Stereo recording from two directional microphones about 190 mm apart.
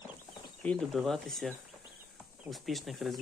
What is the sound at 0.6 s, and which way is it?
Speech, 5° left (ahead or behind).